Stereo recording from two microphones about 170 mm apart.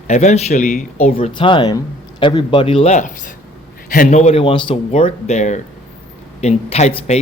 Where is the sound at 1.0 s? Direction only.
35° left (ahead or behind).